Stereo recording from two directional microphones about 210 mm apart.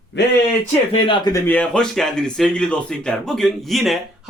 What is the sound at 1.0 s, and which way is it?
Speech, 20° left (ahead or behind).